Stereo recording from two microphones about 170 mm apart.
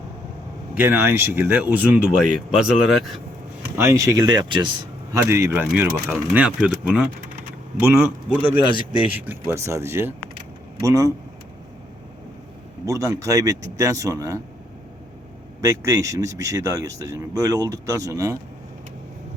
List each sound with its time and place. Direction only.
0.7 s speech: 10° right (ahead or behind)
3.8 s speech: 15° right (ahead or behind)
5.1 s speech: 15° right (ahead or behind)
8.7 s speech: 30° right (ahead or behind)
9.1 s speech: 10° right (ahead or behind)
12.8 s speech: 20° right (ahead or behind)
15.6 s speech: 20° right (ahead or behind)